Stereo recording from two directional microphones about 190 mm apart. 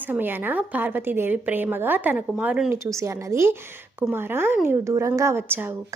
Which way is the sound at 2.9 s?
15° right (ahead or behind).